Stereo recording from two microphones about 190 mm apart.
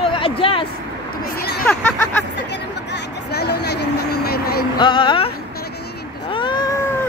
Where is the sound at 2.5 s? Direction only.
60° left (ahead or behind).